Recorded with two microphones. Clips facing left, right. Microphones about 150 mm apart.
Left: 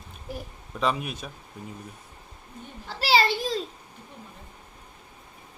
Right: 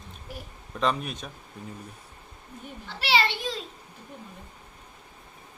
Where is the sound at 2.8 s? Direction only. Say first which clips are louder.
Left 3 dB; 40° left (ahead or behind).